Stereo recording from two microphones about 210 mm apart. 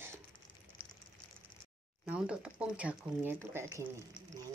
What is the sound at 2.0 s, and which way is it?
Speech, 5° right (ahead or behind).